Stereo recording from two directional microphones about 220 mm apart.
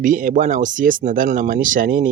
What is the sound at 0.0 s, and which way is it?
Speech, 35° right (ahead or behind).